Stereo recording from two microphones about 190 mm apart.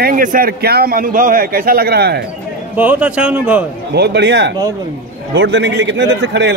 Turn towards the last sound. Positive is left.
turn(degrees=-70)  # may be behind; listen again after turning